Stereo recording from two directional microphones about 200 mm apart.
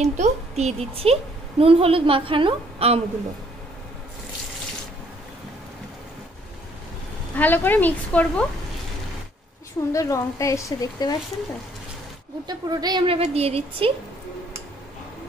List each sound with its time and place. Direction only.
0.0 s a woman's voice: 35° right (ahead or behind)
7.3 s speech: 10° left (ahead or behind)
9.9 s speech: 15° left (ahead or behind)
12.4 s a woman's voice: 20° right (ahead or behind)